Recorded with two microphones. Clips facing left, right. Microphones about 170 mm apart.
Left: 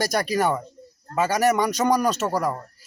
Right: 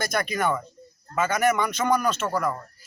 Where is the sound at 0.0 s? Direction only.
35° left (ahead or behind).